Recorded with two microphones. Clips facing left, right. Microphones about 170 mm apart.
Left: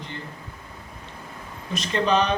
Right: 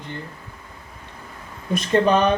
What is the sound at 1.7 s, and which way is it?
Speech, 55° right (ahead or behind).